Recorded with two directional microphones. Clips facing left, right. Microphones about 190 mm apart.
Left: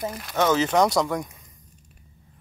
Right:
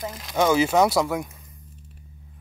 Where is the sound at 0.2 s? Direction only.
10° right (ahead or behind).